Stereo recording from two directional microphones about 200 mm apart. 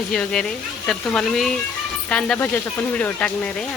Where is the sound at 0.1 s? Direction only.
5° left (ahead or behind).